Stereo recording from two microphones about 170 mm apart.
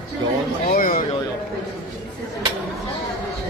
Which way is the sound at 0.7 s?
60° left (ahead or behind).